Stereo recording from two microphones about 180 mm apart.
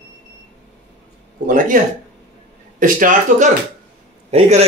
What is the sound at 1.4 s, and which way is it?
Speech, 45° right (ahead or behind).